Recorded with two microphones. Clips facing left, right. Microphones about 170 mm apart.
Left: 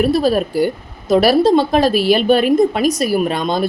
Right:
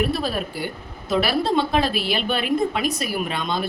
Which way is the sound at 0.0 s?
40° left (ahead or behind).